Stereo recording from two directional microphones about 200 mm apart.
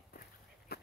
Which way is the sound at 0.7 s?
50° left (ahead or behind).